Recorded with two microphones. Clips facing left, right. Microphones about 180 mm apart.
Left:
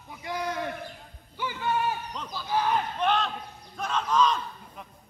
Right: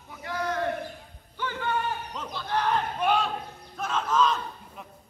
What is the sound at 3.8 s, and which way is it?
Battle cry, 5° right (ahead or behind).